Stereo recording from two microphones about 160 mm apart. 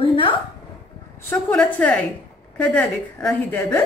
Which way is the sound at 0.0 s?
30° left (ahead or behind).